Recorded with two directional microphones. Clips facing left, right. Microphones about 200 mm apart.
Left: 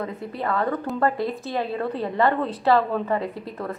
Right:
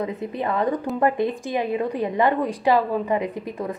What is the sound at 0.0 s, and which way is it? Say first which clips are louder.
A woman's voice: right 3 dB; 20° right (ahead or behind).